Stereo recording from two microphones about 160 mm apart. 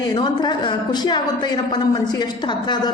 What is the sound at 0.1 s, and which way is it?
A woman's voice, 30° left (ahead or behind).